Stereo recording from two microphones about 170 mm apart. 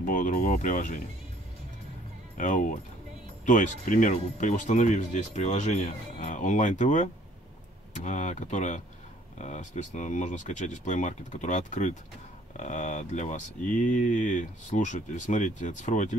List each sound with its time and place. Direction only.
0.0 s speech: 50° left (ahead or behind)
2.3 s speech: 50° left (ahead or behind)